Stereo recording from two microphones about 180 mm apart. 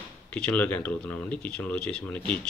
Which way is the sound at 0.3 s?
5° left (ahead or behind).